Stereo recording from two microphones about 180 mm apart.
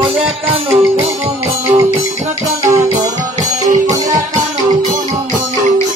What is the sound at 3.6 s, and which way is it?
Music, 45° right (ahead or behind).